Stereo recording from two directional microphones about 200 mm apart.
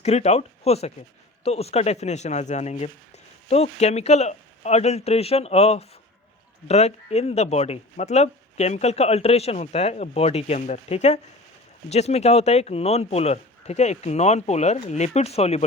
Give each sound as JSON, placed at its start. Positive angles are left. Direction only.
{"t": 0.0, "sound": "speech", "side_deg": 35}